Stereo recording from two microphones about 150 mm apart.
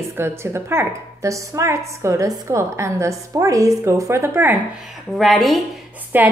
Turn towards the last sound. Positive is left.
turn(degrees=-15)  # may be behind; listen again after turning